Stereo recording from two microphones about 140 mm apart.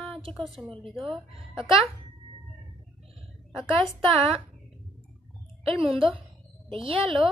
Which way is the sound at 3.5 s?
Centre (ahead or behind).